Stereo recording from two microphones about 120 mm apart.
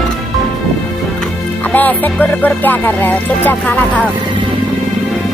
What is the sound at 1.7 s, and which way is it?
Music, 15° left (ahead or behind).